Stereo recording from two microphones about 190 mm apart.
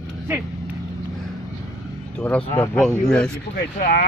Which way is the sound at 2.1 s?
5° left (ahead or behind).